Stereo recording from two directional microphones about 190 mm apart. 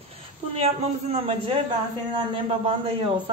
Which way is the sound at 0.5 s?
30° right (ahead or behind).